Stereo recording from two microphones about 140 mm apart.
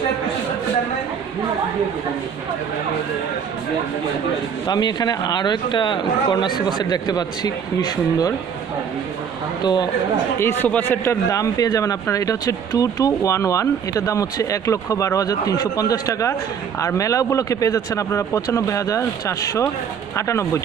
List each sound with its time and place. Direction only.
4.6 s speech: 30° left (ahead or behind)
9.6 s a man's voice: 30° left (ahead or behind)
10.6 s a man's voice: 15° left (ahead or behind)